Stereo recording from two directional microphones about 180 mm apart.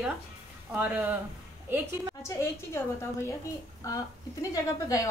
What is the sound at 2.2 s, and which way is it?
A woman's voice, 15° left (ahead or behind).